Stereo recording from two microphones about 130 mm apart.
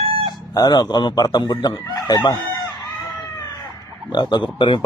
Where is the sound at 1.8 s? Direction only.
30° left (ahead or behind).